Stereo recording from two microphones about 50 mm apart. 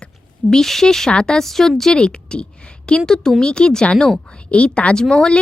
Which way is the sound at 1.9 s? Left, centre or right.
Centre.